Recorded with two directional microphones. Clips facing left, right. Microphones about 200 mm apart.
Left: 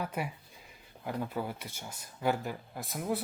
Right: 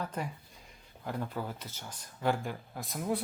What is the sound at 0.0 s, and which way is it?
Speech, 10° left (ahead or behind).